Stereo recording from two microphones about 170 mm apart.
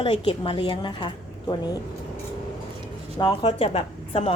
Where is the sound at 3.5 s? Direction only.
35° left (ahead or behind).